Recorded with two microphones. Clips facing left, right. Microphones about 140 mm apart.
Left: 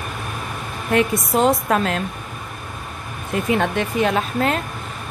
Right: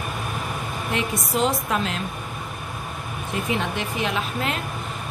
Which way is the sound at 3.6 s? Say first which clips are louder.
Left 7 dB; 50° left (ahead or behind).